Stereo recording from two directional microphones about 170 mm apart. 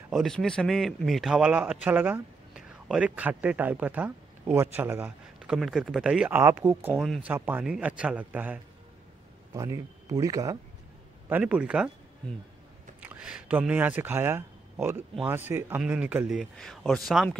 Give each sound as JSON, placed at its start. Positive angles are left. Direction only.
{"t": 0.1, "sound": "a man's voice", "side_deg": 0}
{"t": 6.9, "sound": "a man's voice", "side_deg": 0}
{"t": 7.2, "sound": "a man's voice", "side_deg": -10}
{"t": 9.5, "sound": "speech", "side_deg": -20}
{"t": 11.2, "sound": "a man's voice", "side_deg": -10}
{"t": 13.0, "sound": "a man's voice", "side_deg": -5}
{"t": 16.5, "sound": "a man's voice", "side_deg": 5}